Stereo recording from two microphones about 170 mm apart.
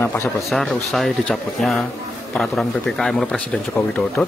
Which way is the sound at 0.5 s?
Centre (ahead or behind).